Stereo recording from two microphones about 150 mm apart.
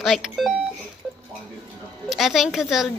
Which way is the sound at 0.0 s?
Centre (ahead or behind).